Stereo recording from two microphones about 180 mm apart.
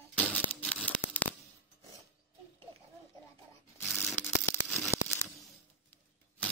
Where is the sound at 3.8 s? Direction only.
Centre (ahead or behind).